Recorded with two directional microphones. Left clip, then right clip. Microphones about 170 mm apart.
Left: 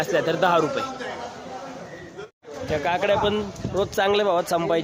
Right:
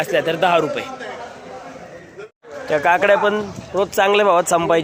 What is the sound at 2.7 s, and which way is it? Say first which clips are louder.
A man's voice: right 8 dB; 15° right (ahead or behind).